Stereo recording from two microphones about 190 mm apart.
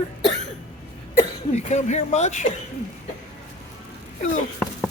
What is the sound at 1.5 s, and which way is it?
Speech, 35° left (ahead or behind).